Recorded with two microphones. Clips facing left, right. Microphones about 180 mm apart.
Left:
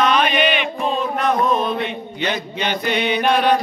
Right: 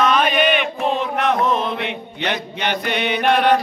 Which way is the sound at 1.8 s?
70° right (ahead or behind).